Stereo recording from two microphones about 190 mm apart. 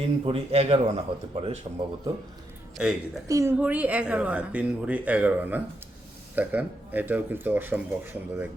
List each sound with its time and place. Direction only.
0.0 s speech: 30° right (ahead or behind)
2.8 s speech: 5° right (ahead or behind)
3.2 s speech: 15° right (ahead or behind)